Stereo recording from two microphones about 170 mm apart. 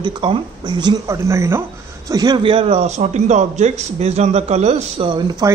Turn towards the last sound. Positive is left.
turn(degrees=-20)  # may be behind; listen again after turning